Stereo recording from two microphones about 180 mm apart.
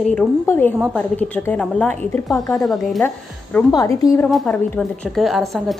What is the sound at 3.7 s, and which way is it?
Speech, 20° left (ahead or behind).